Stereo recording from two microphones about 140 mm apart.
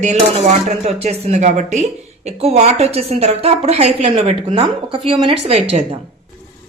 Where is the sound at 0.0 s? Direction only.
55° right (ahead or behind).